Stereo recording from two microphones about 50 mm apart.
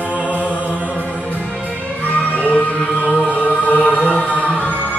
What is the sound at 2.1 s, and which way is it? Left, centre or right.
Music, left.